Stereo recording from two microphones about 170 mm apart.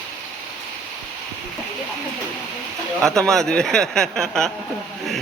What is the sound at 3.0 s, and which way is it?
Speech, 5° left (ahead or behind).